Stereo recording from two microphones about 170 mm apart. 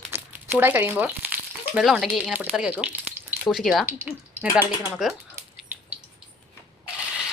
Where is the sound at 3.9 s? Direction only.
10° right (ahead or behind).